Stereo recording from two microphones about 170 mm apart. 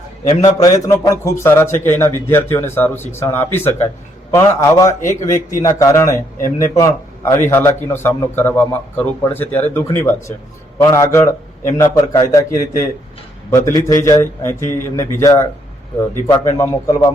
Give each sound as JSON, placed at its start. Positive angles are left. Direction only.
{"t": 0.3, "sound": "a man's voice", "side_deg": 20}